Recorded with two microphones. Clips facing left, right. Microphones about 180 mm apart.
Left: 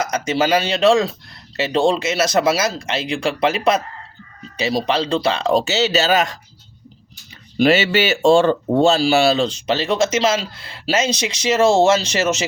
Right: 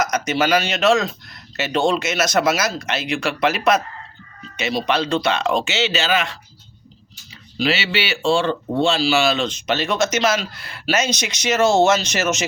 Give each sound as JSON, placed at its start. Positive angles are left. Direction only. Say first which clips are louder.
{"t": 0.0, "sound": "speech", "louder": "left 1 dB", "side_deg": 30}
{"t": 7.6, "sound": "speech", "louder": "left 7 dB", "side_deg": 45}